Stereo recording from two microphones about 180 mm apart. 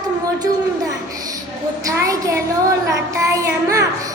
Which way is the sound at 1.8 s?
20° right (ahead or behind).